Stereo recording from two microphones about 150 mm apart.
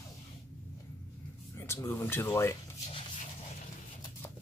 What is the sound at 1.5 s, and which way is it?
Speech, 15° left (ahead or behind).